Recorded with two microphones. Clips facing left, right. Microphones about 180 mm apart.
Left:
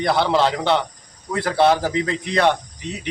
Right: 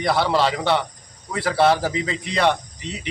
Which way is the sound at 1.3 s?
5° right (ahead or behind).